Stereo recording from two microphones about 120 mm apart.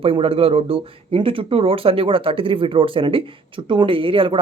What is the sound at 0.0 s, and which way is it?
Speech, 50° right (ahead or behind).